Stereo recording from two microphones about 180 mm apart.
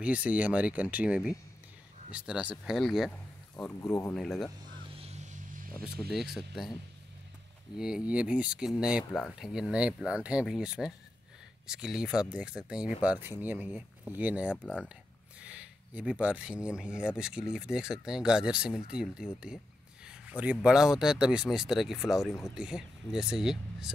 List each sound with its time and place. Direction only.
0.0 s speech: 5° right (ahead or behind)
3.5 s speech: 15° left (ahead or behind)
4.2 s speech: centre (ahead or behind)
4.9 s vehicle: 35° right (ahead or behind)
6.1 s speech: centre (ahead or behind)
7.7 s speech: 5° right (ahead or behind)
14.5 s speech: 5° left (ahead or behind)
15.4 s speech: 5° right (ahead or behind)